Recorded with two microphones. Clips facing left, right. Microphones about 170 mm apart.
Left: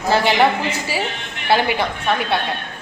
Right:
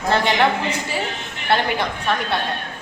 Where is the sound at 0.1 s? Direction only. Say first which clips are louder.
Left 2 dB; 5° left (ahead or behind).